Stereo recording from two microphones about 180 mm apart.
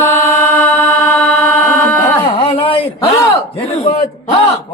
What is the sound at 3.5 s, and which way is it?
Speech, 35° left (ahead or behind).